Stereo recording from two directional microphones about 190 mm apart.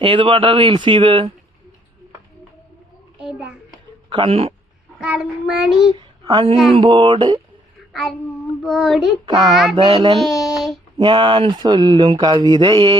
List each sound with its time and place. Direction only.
0.0 s mantra: 30° right (ahead or behind)
3.2 s child singing: 5° right (ahead or behind)
4.1 s speech: 30° right (ahead or behind)
4.9 s child singing: 5° right (ahead or behind)
6.0 s a sound: 20° right (ahead or behind)
6.7 s mantra: 25° right (ahead or behind)
8.6 s child singing: centre (ahead or behind)
9.2 s mantra: 25° right (ahead or behind)
9.5 s child singing: centre (ahead or behind)
9.7 s mantra: 25° right (ahead or behind)
10.2 s child singing: centre (ahead or behind)
10.9 s mantra: 25° right (ahead or behind)